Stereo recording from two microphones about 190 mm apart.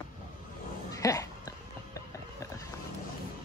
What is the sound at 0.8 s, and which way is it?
Dog, 15° left (ahead or behind).